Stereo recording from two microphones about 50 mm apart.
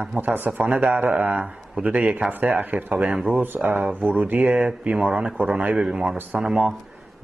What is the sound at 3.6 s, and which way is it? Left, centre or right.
Speech, centre.